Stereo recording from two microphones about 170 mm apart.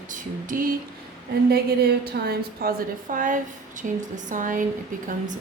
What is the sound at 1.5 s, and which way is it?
A woman's voice, 70° right (ahead or behind).